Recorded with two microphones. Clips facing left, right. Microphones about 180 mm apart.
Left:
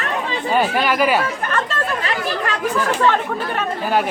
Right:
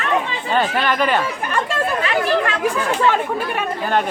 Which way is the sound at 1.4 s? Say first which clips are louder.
Right 1 dB; 10° right (ahead or behind).